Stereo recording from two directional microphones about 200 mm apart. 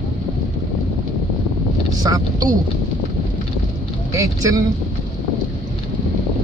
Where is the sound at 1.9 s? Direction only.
20° right (ahead or behind).